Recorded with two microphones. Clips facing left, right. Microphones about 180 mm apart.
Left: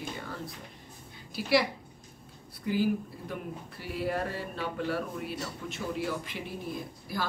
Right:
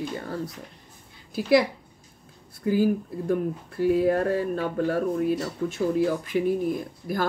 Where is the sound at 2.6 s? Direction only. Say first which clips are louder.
Right 6 dB; 45° right (ahead or behind).